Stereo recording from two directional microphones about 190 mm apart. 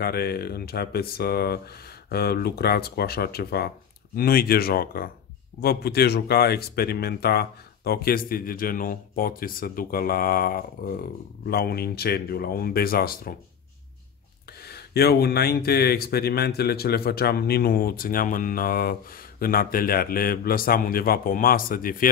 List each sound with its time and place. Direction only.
0.0 s speech: 55° left (ahead or behind)
14.6 s speech: 55° left (ahead or behind)